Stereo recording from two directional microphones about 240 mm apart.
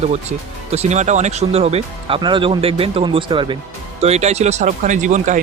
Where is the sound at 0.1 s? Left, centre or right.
Right.